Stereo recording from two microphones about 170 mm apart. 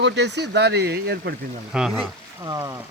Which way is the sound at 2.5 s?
20° right (ahead or behind).